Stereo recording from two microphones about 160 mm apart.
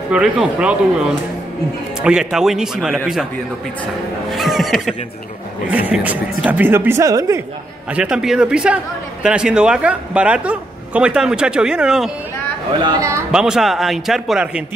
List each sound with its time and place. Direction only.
0.1 s a man's voice: 5° right (ahead or behind)
4.3 s a man's voice: centre (ahead or behind); by 7.4 s 20° right (ahead or behind)
7.9 s a man's voice: 5° right (ahead or behind)
12.8 s a man's voice: 20° right (ahead or behind)
13.3 s a man's voice: 5° right (ahead or behind)